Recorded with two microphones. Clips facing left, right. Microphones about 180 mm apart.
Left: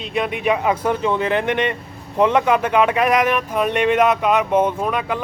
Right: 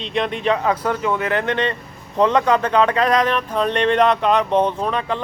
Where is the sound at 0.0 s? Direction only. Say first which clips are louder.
Even; 5° left (ahead or behind).